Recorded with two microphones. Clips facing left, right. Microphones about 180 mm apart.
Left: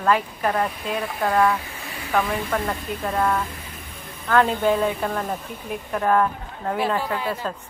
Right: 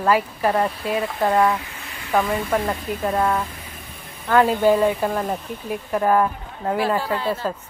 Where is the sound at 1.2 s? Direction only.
20° right (ahead or behind).